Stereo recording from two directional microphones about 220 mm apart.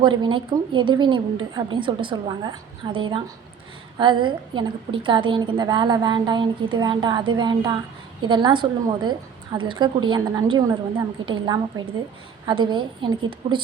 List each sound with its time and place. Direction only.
0.2 s a woman's voice: 20° right (ahead or behind)